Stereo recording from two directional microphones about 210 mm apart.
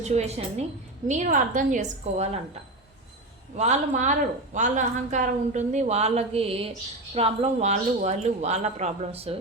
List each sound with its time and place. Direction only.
0.0 s speech: 30° right (ahead or behind)
3.6 s speech: 35° right (ahead or behind)